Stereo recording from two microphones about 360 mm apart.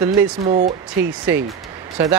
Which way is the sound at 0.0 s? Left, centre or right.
Centre.